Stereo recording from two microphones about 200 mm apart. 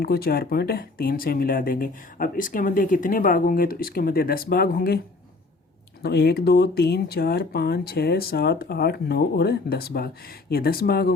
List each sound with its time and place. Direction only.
0.0 s speech: 50° left (ahead or behind)
6.0 s speech: 55° left (ahead or behind)